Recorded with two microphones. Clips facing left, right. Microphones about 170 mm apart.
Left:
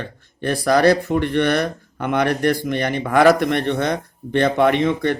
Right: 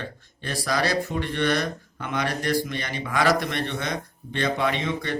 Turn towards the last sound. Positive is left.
turn(degrees=55)  # may be behind; listen again after turning